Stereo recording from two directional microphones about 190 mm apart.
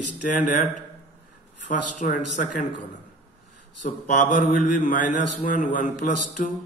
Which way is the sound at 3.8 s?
40° left (ahead or behind).